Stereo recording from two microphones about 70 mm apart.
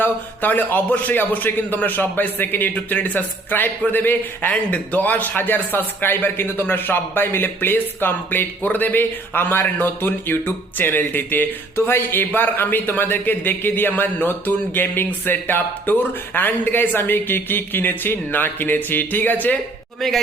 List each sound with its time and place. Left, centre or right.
0.0 s a man's voice: left